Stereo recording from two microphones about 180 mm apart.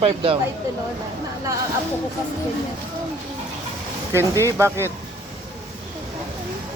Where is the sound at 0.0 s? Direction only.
30° right (ahead or behind).